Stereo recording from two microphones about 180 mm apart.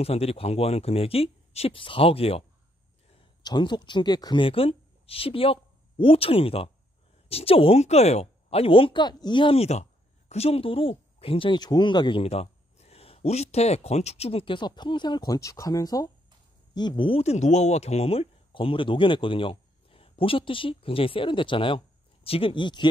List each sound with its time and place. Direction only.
0.0 s speech: 35° left (ahead or behind)
3.4 s speech: 25° left (ahead or behind)